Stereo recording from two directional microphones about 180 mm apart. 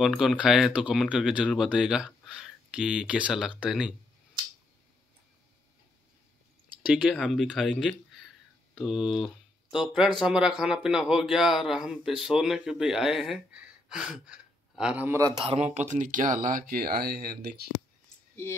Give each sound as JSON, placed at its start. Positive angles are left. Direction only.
{"t": 0.0, "sound": "speech", "side_deg": -5}
{"t": 6.8, "sound": "speech", "side_deg": -5}
{"t": 15.4, "sound": "speech", "side_deg": -35}
{"t": 18.3, "sound": "speech", "side_deg": 15}